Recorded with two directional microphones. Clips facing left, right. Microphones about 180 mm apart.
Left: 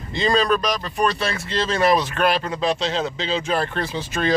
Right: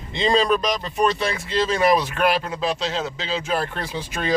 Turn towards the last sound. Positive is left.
turn(degrees=-10)  # may be behind; listen again after turning